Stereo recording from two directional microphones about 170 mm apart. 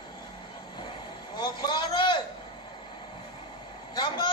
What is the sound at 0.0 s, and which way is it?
Vehicle, 25° left (ahead or behind).